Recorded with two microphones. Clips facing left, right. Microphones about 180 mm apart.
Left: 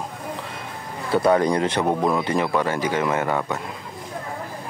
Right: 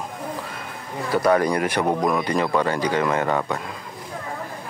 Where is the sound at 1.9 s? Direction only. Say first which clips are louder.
Even; 5° left (ahead or behind).